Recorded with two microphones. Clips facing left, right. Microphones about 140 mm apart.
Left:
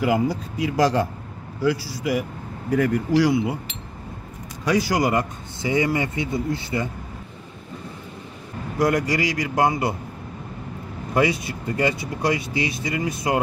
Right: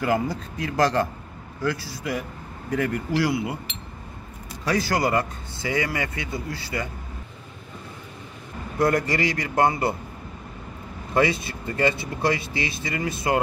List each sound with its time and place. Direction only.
0.0 s speech: 10° left (ahead or behind)
4.6 s a man's voice: 15° left (ahead or behind)
8.7 s speech: 10° left (ahead or behind)
11.1 s speech: 15° left (ahead or behind)